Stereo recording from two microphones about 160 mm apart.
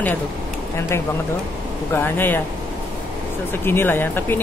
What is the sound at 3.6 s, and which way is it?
Speech, 15° left (ahead or behind).